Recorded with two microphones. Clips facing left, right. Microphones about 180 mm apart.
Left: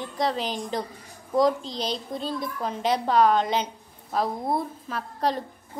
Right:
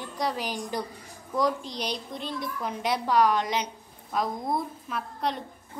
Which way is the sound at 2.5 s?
25° left (ahead or behind).